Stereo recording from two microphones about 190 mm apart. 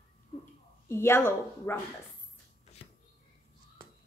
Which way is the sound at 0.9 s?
15° left (ahead or behind).